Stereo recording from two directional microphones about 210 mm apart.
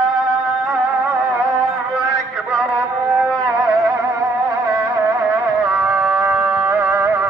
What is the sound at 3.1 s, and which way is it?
Music, centre (ahead or behind).